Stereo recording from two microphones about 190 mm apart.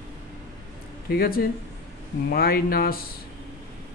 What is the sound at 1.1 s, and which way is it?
Speech, 50° left (ahead or behind).